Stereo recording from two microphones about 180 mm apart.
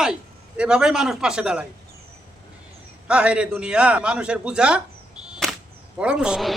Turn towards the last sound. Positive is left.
turn(degrees=-5)  # may be behind; listen again after turning